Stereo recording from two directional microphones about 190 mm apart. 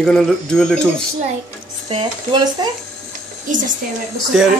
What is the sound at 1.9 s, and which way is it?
Speech, 25° right (ahead or behind).